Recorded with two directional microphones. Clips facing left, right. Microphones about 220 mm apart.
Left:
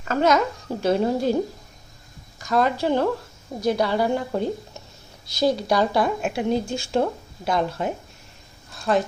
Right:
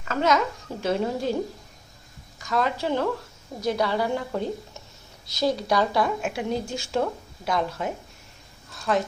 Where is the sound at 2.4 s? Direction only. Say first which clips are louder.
Left 4 dB; 40° left (ahead or behind).